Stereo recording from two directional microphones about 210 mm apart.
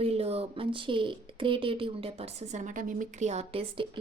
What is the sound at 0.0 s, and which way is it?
Speech, 30° right (ahead or behind).